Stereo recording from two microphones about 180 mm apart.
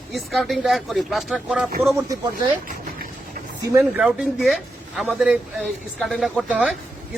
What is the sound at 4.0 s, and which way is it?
A man's voice, 5° right (ahead or behind).